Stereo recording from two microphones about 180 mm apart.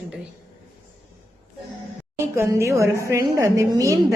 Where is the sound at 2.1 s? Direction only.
15° right (ahead or behind).